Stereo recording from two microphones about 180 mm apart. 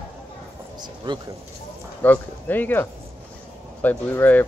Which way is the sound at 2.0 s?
10° left (ahead or behind).